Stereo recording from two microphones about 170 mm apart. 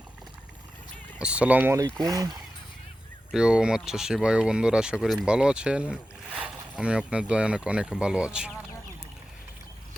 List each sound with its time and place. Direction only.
1.2 s speech: 5° right (ahead or behind)
3.3 s speech: 5° right (ahead or behind)